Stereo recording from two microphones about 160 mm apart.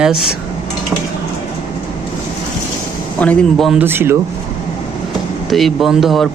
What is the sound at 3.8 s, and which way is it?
Speech, 15° right (ahead or behind).